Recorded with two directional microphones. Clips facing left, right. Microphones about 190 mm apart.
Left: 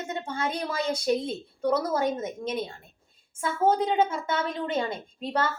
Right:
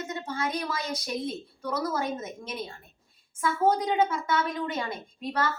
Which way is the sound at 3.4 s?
30° left (ahead or behind).